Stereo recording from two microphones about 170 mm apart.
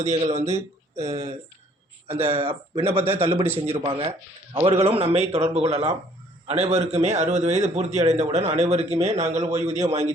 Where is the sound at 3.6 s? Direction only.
35° right (ahead or behind).